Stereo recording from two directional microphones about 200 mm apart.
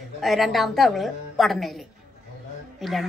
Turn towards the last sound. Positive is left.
turn(degrees=0)  # may be behind; listen again after turning